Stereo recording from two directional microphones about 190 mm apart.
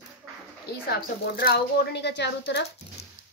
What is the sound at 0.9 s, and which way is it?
A woman's voice, 55° left (ahead or behind).